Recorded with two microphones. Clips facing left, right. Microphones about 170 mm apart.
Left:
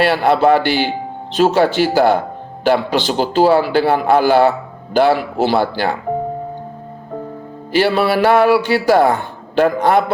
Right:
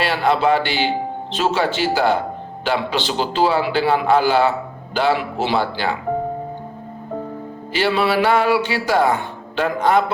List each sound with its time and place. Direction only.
0.0 s a man's voice: 50° left (ahead or behind)
7.7 s a man's voice: 50° left (ahead or behind)